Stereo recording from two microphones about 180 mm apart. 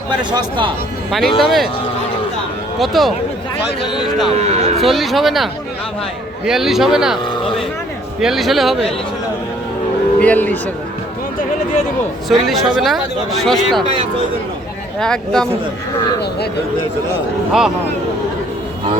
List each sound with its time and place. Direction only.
0.2 s speech: 25° right (ahead or behind)
1.1 s speech: centre (ahead or behind)
2.7 s speech: centre (ahead or behind)
3.8 s speech: 25° left (ahead or behind)
4.3 s speech: 35° right (ahead or behind)
4.8 s speech: centre (ahead or behind)
7.3 s a sound: 30° left (ahead or behind)
8.2 s speech: centre (ahead or behind)
10.2 s speech: 10° left (ahead or behind)
12.3 s speech: centre (ahead or behind)
14.9 s speech: 5° left (ahead or behind)